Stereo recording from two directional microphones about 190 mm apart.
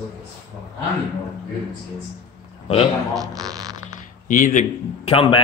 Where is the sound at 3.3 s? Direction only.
20° right (ahead or behind).